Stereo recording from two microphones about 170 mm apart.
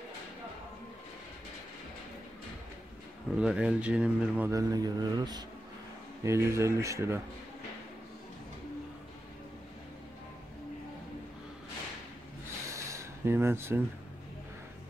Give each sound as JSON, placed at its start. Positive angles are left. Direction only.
{"t": 3.3, "sound": "speech", "side_deg": -5}
{"t": 4.5, "sound": "speech", "side_deg": -20}
{"t": 12.6, "sound": "a sound", "side_deg": -15}